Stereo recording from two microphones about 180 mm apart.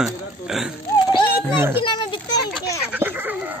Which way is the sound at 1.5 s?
10° right (ahead or behind).